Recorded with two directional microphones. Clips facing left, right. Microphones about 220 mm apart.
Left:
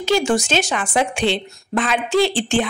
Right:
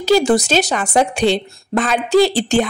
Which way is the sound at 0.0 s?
35° right (ahead or behind).